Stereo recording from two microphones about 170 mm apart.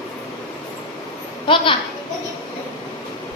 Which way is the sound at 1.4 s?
30° left (ahead or behind).